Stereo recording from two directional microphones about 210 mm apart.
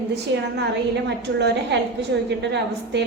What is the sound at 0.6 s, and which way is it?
A woman's voice, 55° right (ahead or behind).